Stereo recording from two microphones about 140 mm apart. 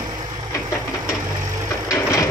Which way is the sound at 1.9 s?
20° left (ahead or behind).